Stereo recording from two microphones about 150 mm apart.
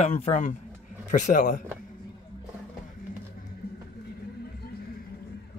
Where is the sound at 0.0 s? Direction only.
50° left (ahead or behind).